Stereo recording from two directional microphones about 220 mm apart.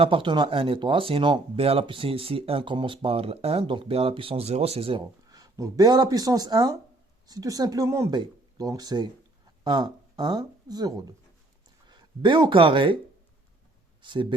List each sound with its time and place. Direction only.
0.0 s speech: 20° right (ahead or behind)
14.0 s speech: 20° right (ahead or behind)